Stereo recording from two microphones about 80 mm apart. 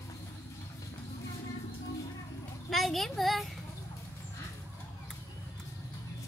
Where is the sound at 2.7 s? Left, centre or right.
Centre.